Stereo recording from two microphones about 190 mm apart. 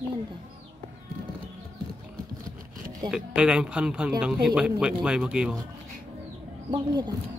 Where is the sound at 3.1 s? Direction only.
5° right (ahead or behind).